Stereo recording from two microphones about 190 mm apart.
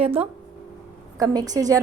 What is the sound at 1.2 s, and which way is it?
Speech, 20° right (ahead or behind).